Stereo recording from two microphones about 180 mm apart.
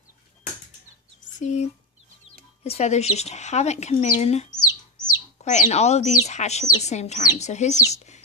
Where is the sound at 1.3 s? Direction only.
40° left (ahead or behind).